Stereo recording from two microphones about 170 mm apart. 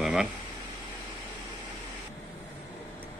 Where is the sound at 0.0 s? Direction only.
5° right (ahead or behind).